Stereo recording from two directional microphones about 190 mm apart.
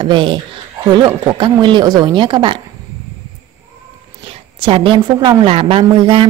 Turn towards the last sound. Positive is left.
turn(degrees=-30)  # may be behind; listen again after turning